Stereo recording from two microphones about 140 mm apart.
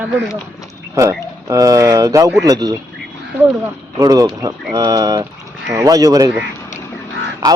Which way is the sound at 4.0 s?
25° right (ahead or behind).